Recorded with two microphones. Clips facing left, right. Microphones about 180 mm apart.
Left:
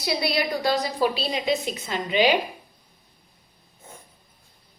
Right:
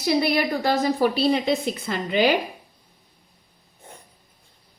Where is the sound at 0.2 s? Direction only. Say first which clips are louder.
Right 3 dB; 50° right (ahead or behind).